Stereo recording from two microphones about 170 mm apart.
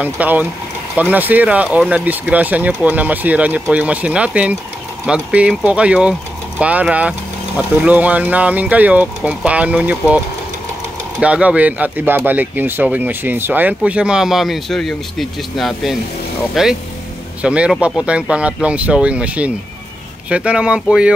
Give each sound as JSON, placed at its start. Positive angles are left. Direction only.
{"t": 0.0, "sound": "speech", "side_deg": -10}